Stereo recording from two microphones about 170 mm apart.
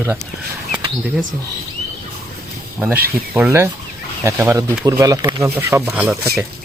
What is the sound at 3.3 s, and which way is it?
Speech, 10° right (ahead or behind).